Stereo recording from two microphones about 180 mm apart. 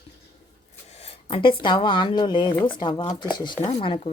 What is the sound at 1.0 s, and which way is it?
A woman's voice, 30° left (ahead or behind).